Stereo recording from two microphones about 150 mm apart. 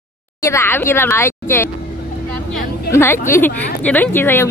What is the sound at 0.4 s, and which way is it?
A woman's voice, 20° left (ahead or behind).